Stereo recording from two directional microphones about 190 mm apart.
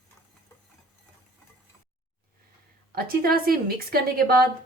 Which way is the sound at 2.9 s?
50° right (ahead or behind).